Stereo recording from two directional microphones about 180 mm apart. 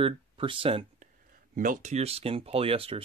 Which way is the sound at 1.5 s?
45° right (ahead or behind).